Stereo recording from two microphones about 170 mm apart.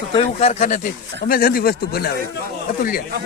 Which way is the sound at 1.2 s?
60° left (ahead or behind).